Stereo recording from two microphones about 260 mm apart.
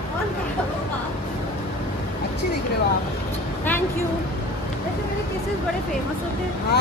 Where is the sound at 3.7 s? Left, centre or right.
Centre.